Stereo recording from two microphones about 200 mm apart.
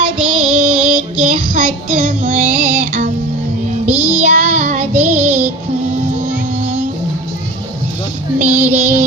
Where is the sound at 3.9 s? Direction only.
10° right (ahead or behind).